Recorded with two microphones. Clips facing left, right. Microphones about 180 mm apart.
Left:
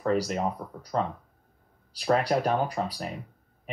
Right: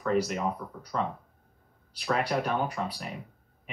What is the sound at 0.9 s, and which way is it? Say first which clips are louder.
Speech: left 3 dB; 35° left (ahead or behind).